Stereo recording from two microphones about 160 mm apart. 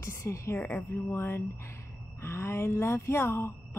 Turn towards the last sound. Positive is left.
turn(degrees=15)  # may be behind; listen again after turning